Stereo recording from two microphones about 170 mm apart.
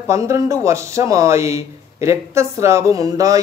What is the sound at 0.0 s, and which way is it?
Speech, 15° right (ahead or behind).